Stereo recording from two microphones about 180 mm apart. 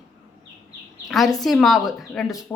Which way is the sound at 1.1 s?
Centre (ahead or behind).